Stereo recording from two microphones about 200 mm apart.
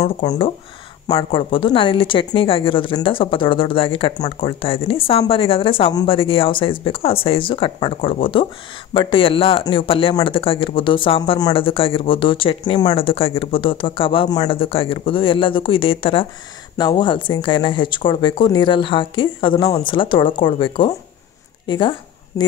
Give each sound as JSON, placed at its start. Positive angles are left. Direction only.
{"t": 0.0, "sound": "speech", "side_deg": 25}